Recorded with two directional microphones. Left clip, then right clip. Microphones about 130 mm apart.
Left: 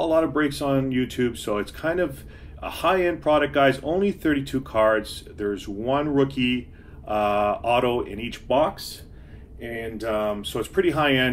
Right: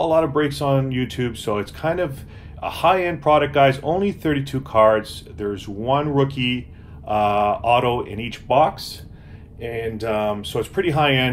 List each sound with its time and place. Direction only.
0.0 s speech: 25° right (ahead or behind); by 9.0 s 40° right (ahead or behind)
9.6 s speech: 25° right (ahead or behind)